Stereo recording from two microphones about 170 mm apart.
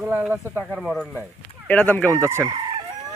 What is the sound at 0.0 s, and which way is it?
Speech, 10° right (ahead or behind).